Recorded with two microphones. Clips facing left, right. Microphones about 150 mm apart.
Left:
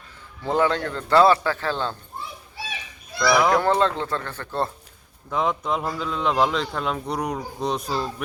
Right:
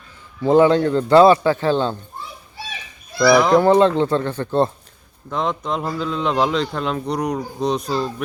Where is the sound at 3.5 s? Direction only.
15° right (ahead or behind).